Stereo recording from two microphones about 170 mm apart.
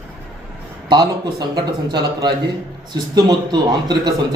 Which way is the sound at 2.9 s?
25° right (ahead or behind).